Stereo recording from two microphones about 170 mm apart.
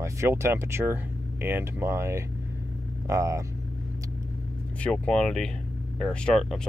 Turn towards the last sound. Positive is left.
turn(degrees=5)  # may be behind; listen again after turning